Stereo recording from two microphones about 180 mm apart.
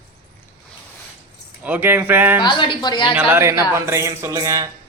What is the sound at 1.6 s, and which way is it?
Speech, 10° right (ahead or behind).